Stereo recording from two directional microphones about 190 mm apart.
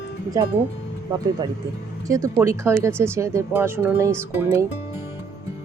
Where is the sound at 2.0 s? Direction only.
15° right (ahead or behind).